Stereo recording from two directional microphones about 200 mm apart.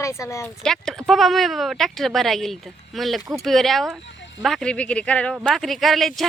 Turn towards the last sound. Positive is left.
turn(degrees=0)  # may be behind; listen again after turning